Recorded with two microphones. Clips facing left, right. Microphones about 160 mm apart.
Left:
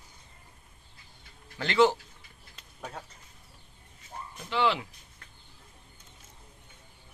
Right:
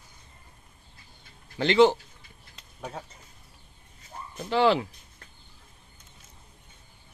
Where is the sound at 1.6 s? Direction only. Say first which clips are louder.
Right 4 dB; 20° right (ahead or behind).